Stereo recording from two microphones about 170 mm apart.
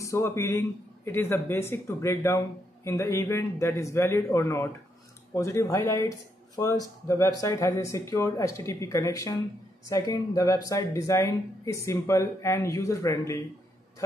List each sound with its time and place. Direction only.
0.0 s speech: 15° left (ahead or behind)